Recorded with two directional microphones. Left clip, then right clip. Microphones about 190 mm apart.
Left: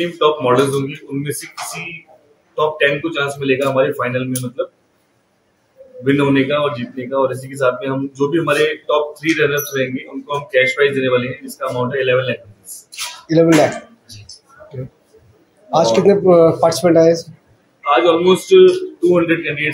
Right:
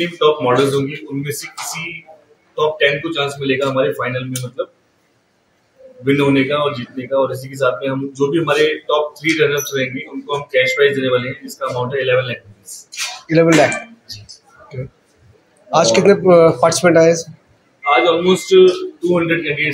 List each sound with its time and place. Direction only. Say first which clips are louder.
0.2 s speech: even; centre (ahead or behind)
2.5 s speech: even; centre (ahead or behind)
6.0 s speech: even; centre (ahead or behind)
15.7 s a man's voice: right 1 dB; centre (ahead or behind)